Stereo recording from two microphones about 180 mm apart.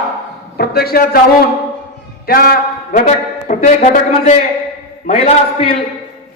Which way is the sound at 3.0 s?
40° left (ahead or behind).